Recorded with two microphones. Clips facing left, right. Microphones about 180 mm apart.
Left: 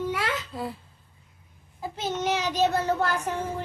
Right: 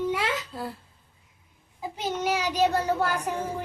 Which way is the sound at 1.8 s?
10° right (ahead or behind).